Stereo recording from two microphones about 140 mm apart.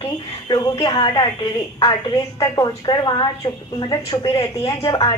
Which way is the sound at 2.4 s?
30° left (ahead or behind).